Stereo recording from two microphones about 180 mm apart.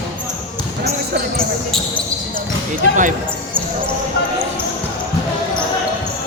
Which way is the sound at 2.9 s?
45° right (ahead or behind).